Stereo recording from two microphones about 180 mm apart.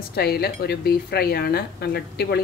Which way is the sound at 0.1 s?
60° left (ahead or behind).